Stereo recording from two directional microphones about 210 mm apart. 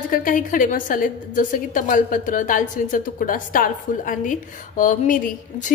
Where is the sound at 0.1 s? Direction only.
40° left (ahead or behind).